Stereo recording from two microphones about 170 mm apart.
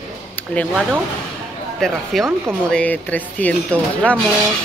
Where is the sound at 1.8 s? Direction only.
Centre (ahead or behind).